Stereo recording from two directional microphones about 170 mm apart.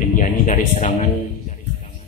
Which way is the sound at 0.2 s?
50° left (ahead or behind).